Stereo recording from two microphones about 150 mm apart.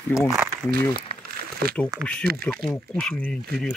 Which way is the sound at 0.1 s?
20° left (ahead or behind).